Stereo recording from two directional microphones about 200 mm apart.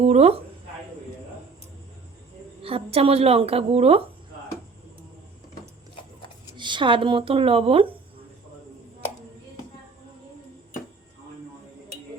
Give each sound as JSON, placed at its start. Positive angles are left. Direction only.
{"t": 0.0, "sound": "speech", "side_deg": -30}
{"t": 2.6, "sound": "a woman's voice", "side_deg": -30}
{"t": 6.6, "sound": "a woman's voice", "side_deg": -25}